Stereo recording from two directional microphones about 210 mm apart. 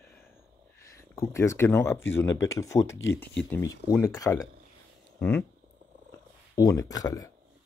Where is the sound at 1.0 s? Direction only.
15° left (ahead or behind).